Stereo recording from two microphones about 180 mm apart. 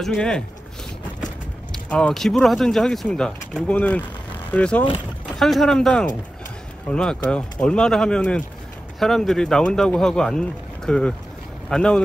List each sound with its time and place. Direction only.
0.0 s speech: 5° left (ahead or behind)
1.7 s speech: 5° left (ahead or behind)